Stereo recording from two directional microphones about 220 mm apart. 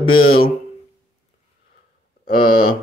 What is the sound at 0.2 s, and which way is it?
Speech, 45° left (ahead or behind).